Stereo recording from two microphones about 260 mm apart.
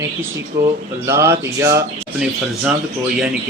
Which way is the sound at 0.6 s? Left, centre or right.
Right.